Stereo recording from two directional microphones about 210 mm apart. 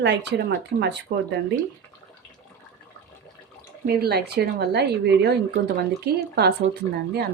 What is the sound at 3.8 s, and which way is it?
Speech, 50° right (ahead or behind).